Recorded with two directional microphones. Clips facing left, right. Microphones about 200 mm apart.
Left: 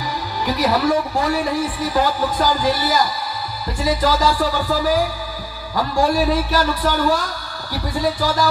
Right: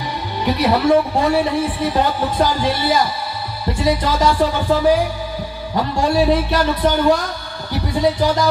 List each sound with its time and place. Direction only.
0.5 s a man's voice: 25° right (ahead or behind)